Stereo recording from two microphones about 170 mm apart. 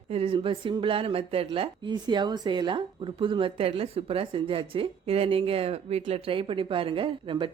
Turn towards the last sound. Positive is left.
turn(degrees=-30)  # may be behind; listen again after turning